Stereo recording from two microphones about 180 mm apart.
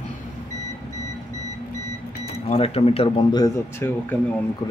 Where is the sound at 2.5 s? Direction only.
35° left (ahead or behind); by 4.1 s 10° left (ahead or behind).